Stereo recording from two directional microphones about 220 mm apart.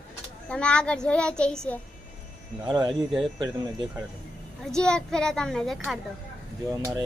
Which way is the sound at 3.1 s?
Centre (ahead or behind).